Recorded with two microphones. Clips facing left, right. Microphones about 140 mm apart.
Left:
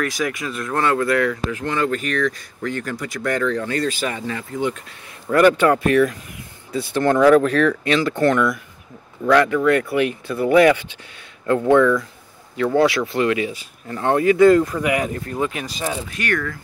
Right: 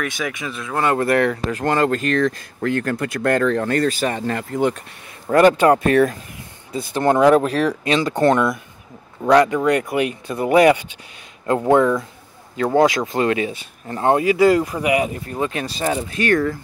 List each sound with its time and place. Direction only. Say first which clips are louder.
0.0 s speech: left 2 dB; centre (ahead or behind)
1.0 s speech: right 2 dB; 55° right (ahead or behind)
1.6 s speech: right 5 dB; 45° right (ahead or behind)
2.6 s speech: right 5 dB; 50° right (ahead or behind)
3.4 s speech: right 3 dB; 45° right (ahead or behind)
5.3 s speech: right 2 dB; 30° right (ahead or behind)
6.7 s speech: even; 15° right (ahead or behind)
12.5 s speech: right 1 dB; 40° right (ahead or behind)
12.8 s speech: right 1 dB; 20° right (ahead or behind)
13.2 s speech: right 1 dB; 30° right (ahead or behind)
14.0 s speech: left 1 dB; 15° right (ahead or behind)
15.4 s speech: right 4 dB; 30° right (ahead or behind)